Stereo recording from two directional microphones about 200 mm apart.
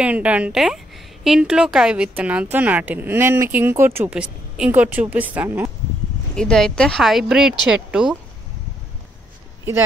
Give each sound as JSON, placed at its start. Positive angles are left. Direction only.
{"t": 0.0, "sound": "a woman's voice", "side_deg": -5}
{"t": 6.3, "sound": "speech", "side_deg": 5}